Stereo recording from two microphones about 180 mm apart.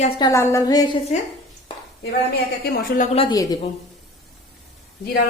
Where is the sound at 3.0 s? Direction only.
30° left (ahead or behind).